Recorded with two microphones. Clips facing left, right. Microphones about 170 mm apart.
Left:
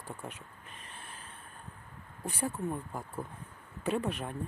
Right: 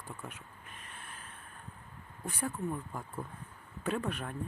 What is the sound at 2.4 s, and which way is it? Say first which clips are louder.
Speech: left 1 dB; 25° left (ahead or behind).